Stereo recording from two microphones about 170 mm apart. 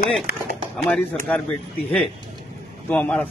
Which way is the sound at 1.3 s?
10° left (ahead or behind).